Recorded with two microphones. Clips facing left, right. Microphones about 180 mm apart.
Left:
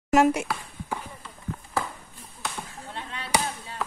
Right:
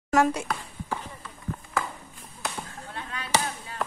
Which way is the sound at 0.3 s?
10° left (ahead or behind).